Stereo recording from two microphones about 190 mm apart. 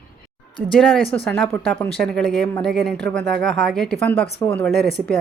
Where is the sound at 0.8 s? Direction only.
5° left (ahead or behind).